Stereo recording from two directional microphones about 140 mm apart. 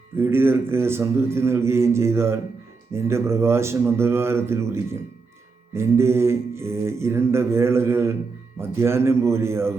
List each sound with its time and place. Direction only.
0.2 s a man's voice: 15° right (ahead or behind)